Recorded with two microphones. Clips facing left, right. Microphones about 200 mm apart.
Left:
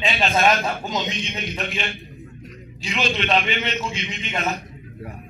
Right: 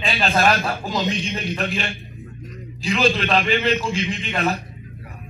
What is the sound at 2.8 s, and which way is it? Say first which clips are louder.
A man's voice: right 5 dB; 35° right (ahead or behind).